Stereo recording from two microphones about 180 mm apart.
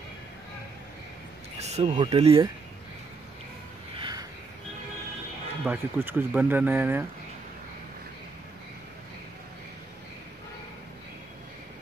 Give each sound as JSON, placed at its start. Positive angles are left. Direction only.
{"t": 1.6, "sound": "speech", "side_deg": -40}
{"t": 3.9, "sound": "a sound", "side_deg": -25}
{"t": 5.7, "sound": "speech", "side_deg": -10}